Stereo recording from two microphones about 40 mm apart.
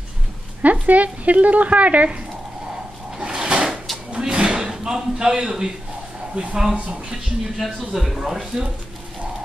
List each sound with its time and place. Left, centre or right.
0.6 s speech: right
3.2 s drawer open or close: right
4.3 s a sound: right
6.4 s a woman's voice: right
7.5 s speech: centre